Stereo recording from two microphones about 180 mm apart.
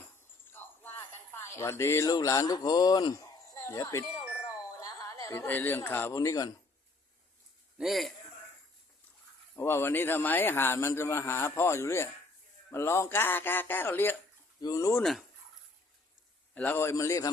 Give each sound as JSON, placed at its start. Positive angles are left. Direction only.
{"t": 0.5, "sound": "a sound", "side_deg": 10}
{"t": 4.8, "sound": "speech", "side_deg": 20}
{"t": 7.8, "sound": "a man's voice", "side_deg": 0}
{"t": 9.6, "sound": "a man's voice", "side_deg": 15}
{"t": 16.6, "sound": "a man's voice", "side_deg": 10}